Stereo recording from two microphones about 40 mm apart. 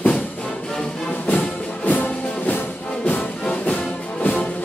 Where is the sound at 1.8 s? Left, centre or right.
Left.